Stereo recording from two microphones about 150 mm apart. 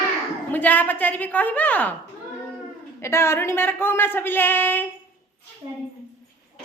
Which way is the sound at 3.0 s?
15° left (ahead or behind).